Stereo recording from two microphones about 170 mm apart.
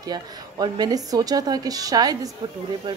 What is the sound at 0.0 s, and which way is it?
A woman's voice, 25° right (ahead or behind).